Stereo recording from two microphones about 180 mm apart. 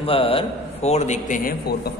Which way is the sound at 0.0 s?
30° left (ahead or behind).